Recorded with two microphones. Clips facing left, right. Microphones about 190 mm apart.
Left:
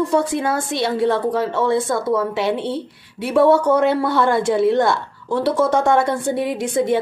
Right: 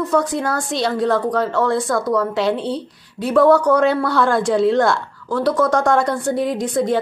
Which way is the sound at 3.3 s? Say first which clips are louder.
Right 1 dB; 25° left (ahead or behind).